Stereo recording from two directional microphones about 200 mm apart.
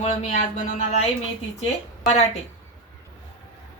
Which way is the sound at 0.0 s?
35° left (ahead or behind).